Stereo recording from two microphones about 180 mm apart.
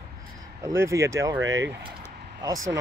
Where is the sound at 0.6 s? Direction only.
15° right (ahead or behind).